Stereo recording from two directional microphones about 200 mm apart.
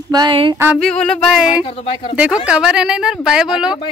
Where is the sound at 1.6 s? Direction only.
30° left (ahead or behind).